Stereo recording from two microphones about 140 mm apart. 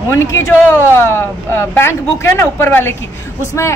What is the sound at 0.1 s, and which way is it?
A woman's voice, 20° left (ahead or behind).